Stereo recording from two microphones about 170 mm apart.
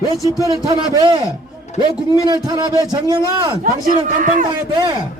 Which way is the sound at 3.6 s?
50° right (ahead or behind).